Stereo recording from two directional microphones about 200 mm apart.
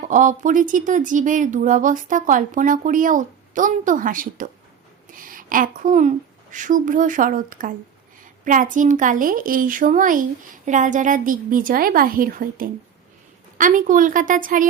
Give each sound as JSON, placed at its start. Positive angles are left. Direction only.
{"t": 0.0, "sound": "a woman's voice", "side_deg": -40}